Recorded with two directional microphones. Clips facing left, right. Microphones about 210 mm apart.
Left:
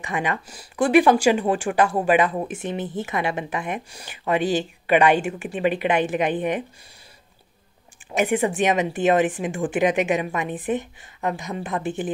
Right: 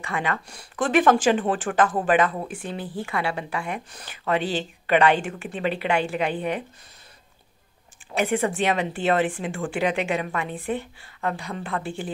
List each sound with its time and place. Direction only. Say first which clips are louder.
0.0 s speech: left 2 dB; 15° left (ahead or behind)
8.1 s speech: left 2 dB; 15° left (ahead or behind)